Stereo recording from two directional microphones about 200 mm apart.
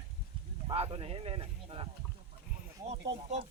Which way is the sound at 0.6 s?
25° right (ahead or behind).